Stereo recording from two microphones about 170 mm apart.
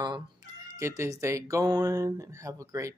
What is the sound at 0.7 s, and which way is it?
Speech, 15° right (ahead or behind).